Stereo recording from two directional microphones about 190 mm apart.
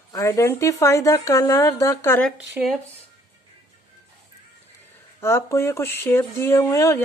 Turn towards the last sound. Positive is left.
turn(degrees=15)  # may be behind; listen again after turning